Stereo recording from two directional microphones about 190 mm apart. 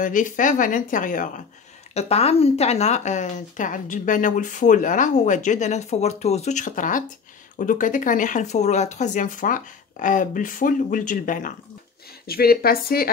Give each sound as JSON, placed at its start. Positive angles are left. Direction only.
{"t": 0.0, "sound": "speech", "side_deg": 45}
{"t": 2.0, "sound": "speech", "side_deg": 35}